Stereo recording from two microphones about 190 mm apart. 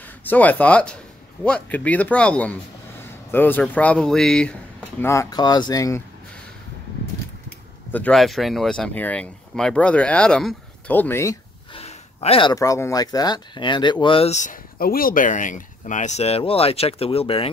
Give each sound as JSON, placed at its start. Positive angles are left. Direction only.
{"t": 0.2, "sound": "speech", "side_deg": 10}
{"t": 7.9, "sound": "speech", "side_deg": 5}
{"t": 11.7, "sound": "speech", "side_deg": 30}